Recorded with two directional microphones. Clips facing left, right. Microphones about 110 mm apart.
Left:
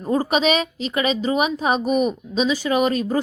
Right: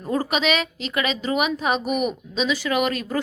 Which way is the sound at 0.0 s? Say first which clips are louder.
Left 3 dB; 15° left (ahead or behind).